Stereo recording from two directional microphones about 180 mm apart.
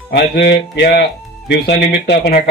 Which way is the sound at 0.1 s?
65° left (ahead or behind).